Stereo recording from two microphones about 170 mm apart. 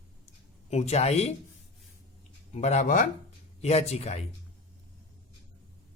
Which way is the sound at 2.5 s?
40° left (ahead or behind).